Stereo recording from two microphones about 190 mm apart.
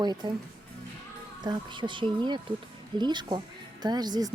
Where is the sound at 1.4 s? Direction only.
25° right (ahead or behind).